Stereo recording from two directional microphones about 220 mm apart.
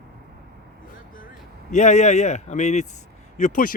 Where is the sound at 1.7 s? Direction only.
30° left (ahead or behind).